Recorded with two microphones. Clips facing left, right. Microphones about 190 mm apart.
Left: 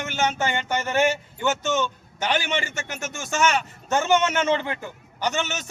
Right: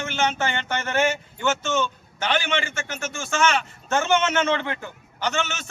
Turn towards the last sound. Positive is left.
turn(degrees=15)  # may be behind; listen again after turning